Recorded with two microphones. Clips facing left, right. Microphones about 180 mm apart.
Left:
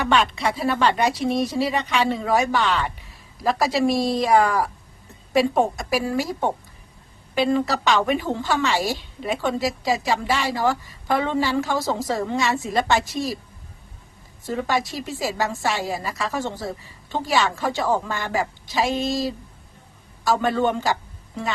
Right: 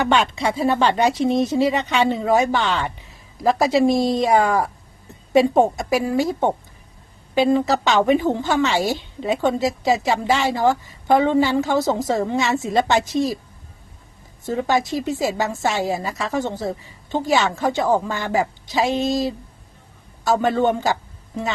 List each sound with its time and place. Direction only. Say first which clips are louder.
0.1 s a woman's voice: right 2 dB; 25° right (ahead or behind)
14.4 s a woman's voice: right 3 dB; 20° right (ahead or behind)